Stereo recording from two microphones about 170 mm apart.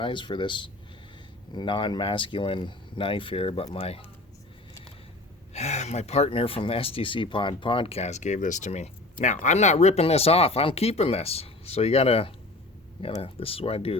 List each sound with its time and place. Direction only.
0.0 s speech: 30° left (ahead or behind)
5.5 s speech: 40° left (ahead or behind)